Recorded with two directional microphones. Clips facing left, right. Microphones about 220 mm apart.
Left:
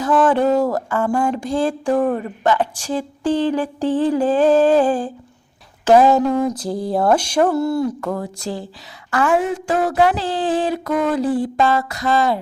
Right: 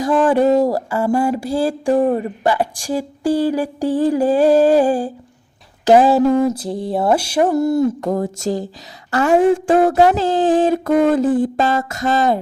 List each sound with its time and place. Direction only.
0.0 s speech: 10° right (ahead or behind)
2.0 s speech: 25° right (ahead or behind)
2.4 s speech: 10° right (ahead or behind)
6.1 s mantra: 10° right (ahead or behind)
7.5 s speech: 15° right (ahead or behind)
8.0 s a sound: 40° right (ahead or behind)
9.0 s a woman's voice: 35° right (ahead or behind)
9.8 s a sound: 45° right (ahead or behind)